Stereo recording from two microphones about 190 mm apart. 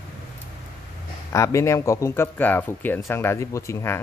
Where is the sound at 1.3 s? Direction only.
15° left (ahead or behind).